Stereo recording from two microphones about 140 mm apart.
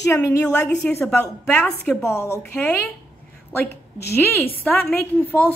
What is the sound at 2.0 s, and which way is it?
A woman's voice, 20° left (ahead or behind).